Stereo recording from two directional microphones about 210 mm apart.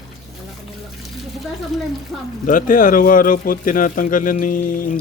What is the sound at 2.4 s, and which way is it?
Speech, 40° left (ahead or behind).